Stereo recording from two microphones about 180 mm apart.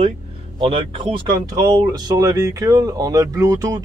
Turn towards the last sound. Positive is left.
turn(degrees=-20)  # may be behind; listen again after turning